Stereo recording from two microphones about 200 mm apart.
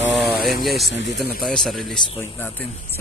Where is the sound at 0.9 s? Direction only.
55° left (ahead or behind).